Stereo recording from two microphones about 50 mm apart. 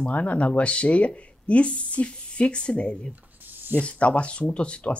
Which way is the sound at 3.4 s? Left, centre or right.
Right.